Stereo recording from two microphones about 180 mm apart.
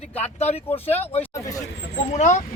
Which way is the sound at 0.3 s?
35° left (ahead or behind).